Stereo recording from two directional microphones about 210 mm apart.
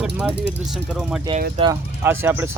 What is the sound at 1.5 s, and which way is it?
Speech, 25° right (ahead or behind).